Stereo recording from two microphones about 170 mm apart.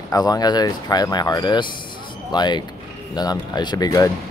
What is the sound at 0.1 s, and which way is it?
Speech, 20° left (ahead or behind).